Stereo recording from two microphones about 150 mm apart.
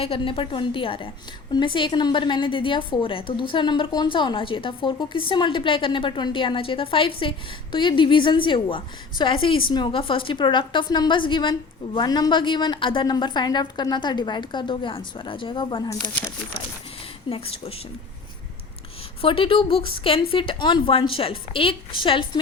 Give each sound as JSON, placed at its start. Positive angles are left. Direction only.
{"t": 0.0, "sound": "a woman's voice", "side_deg": 35}
{"t": 16.0, "sound": "speech", "side_deg": 10}
{"t": 17.2, "sound": "a woman's voice", "side_deg": 40}
{"t": 19.2, "sound": "a woman's voice", "side_deg": 35}